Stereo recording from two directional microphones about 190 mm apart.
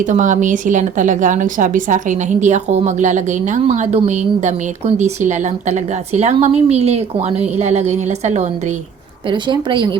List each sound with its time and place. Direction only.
0.0 s a woman's voice: 40° right (ahead or behind)
9.3 s speech: 25° right (ahead or behind)